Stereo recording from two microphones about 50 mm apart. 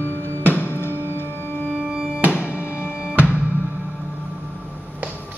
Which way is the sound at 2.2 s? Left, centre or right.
Right.